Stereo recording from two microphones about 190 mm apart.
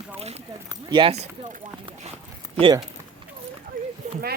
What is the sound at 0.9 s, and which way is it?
Speech, 30° right (ahead or behind).